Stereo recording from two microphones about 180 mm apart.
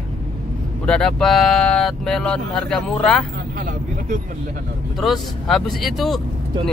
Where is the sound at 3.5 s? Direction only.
50° right (ahead or behind).